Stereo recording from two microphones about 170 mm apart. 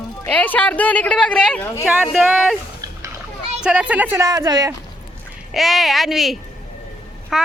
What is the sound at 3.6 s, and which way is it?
A woman's voice, 5° right (ahead or behind).